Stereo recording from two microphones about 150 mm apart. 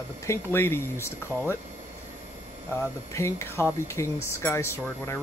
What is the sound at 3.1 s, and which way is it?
Speech, 20° left (ahead or behind).